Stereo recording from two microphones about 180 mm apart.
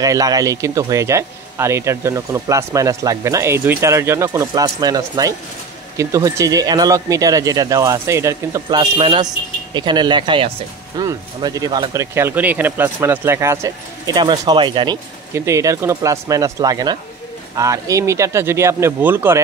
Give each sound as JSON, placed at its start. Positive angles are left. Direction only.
{"t": 0.0, "sound": "speech", "side_deg": -20}
{"t": 15.3, "sound": "speech", "side_deg": -15}